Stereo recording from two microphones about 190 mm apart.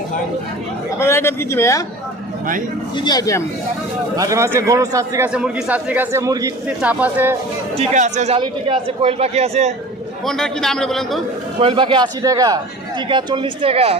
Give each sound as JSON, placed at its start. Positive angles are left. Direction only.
{"t": 0.9, "sound": "a man's voice", "side_deg": 15}
{"t": 3.0, "sound": "speech", "side_deg": 20}
{"t": 4.1, "sound": "speech", "side_deg": -15}
{"t": 5.3, "sound": "speech", "side_deg": -5}
{"t": 7.8, "sound": "speech", "side_deg": -40}
{"t": 10.2, "sound": "a man's voice", "side_deg": 0}
{"t": 11.6, "sound": "a man's voice", "side_deg": -25}